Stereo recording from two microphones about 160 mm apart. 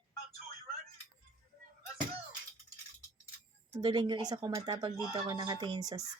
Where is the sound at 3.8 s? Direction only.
30° right (ahead or behind).